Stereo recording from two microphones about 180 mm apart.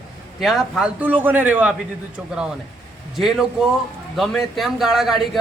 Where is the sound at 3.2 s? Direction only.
Centre (ahead or behind).